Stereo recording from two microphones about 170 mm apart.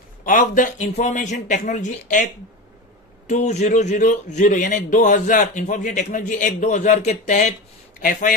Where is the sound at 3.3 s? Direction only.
45° left (ahead or behind).